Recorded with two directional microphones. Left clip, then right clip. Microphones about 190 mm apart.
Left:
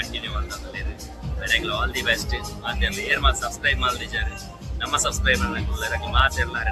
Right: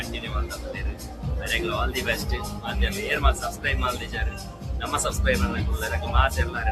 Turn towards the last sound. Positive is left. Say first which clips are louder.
# left 3 dB
turn(degrees=-20)  # may be behind; listen again after turning